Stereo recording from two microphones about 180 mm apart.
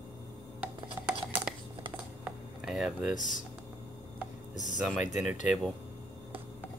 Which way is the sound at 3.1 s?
45° left (ahead or behind).